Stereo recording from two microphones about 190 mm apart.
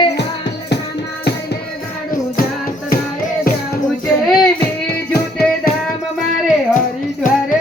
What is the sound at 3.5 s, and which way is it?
Music, 50° left (ahead or behind).